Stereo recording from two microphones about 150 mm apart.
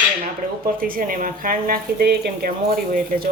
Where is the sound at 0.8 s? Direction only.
70° right (ahead or behind).